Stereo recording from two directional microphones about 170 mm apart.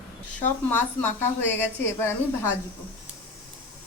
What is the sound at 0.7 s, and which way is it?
A woman's voice, 10° left (ahead or behind).